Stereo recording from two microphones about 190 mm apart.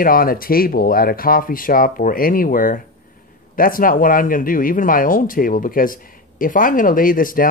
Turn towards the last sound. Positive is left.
turn(degrees=45)  # may be behind; listen again after turning